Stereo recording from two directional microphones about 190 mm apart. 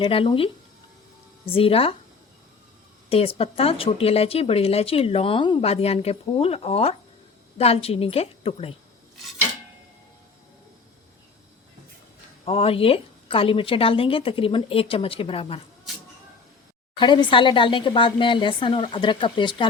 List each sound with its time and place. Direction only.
0.0 s speech: 30° left (ahead or behind)
3.1 s speech: 30° left (ahead or behind)
12.5 s speech: 30° left (ahead or behind)
17.0 s speech: 25° left (ahead or behind)